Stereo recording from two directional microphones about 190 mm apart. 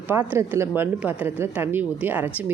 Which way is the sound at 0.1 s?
10° right (ahead or behind).